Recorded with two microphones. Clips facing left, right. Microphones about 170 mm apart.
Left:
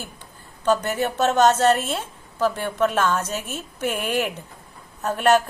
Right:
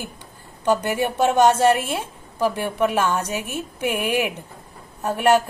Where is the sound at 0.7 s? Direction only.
10° right (ahead or behind).